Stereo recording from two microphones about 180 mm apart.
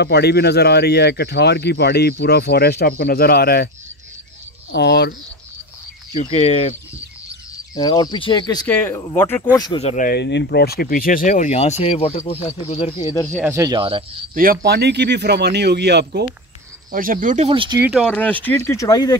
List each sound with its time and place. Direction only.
0.0 s speech: 65° left (ahead or behind)
4.7 s speech: 70° left (ahead or behind)
6.2 s speech: 35° left (ahead or behind)
7.7 s speech: 20° left (ahead or behind)
8.6 s speech: 10° left (ahead or behind)
9.6 s speech: 30° left (ahead or behind)
9.9 s speech: 60° left (ahead or behind); by 13.0 s 35° left (ahead or behind)
13.0 s speech: 20° left (ahead or behind)
13.4 s speech: 15° right (ahead or behind)
14.3 s speech: 50° right (ahead or behind)
16.9 s speech: 50° right (ahead or behind)
17.5 s speech: 30° right (ahead or behind)
17.7 s speech: 10° right (ahead or behind)
18.0 s speech: 10° left (ahead or behind)